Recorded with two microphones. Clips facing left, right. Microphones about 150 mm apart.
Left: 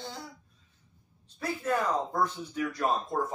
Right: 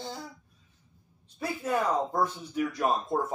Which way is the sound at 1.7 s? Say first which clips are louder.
Right 1 dB; 10° right (ahead or behind).